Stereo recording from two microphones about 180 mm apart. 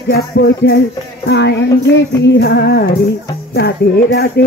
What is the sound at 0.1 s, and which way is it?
Music, 65° left (ahead or behind).